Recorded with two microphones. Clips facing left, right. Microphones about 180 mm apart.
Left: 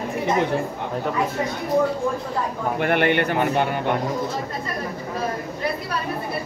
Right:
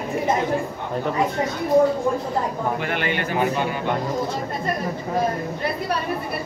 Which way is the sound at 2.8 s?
55° left (ahead or behind).